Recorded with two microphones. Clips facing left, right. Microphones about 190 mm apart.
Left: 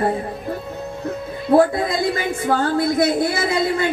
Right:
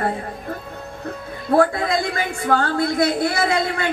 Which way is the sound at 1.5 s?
20° left (ahead or behind).